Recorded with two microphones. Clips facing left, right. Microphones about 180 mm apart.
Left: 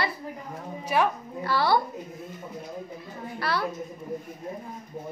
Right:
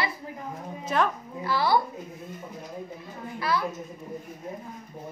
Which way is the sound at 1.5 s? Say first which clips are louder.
Left 1 dB; 60° left (ahead or behind).